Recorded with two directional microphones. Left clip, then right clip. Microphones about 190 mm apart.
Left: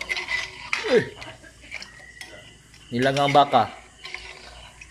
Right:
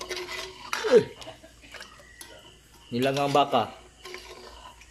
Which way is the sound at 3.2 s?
10° right (ahead or behind).